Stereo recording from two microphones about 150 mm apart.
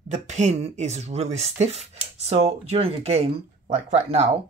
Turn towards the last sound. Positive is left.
turn(degrees=-50)  # may be behind; listen again after turning